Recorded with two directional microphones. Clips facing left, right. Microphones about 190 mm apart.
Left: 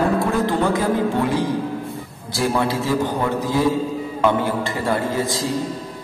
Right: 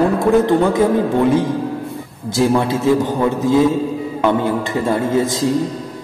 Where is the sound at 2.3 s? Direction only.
20° right (ahead or behind).